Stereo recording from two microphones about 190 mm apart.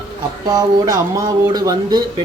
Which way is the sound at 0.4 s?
20° right (ahead or behind).